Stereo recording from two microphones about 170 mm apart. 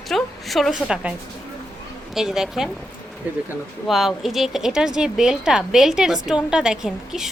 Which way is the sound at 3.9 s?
Centre (ahead or behind).